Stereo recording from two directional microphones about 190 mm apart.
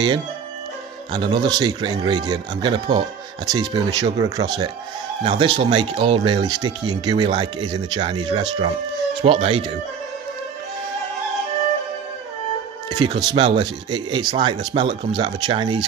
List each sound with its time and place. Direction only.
1.1 s speech: 25° right (ahead or behind)
13.0 s speech: 25° right (ahead or behind)